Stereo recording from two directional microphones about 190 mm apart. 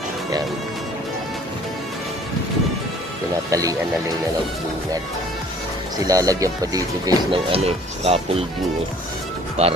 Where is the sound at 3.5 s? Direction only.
20° right (ahead or behind).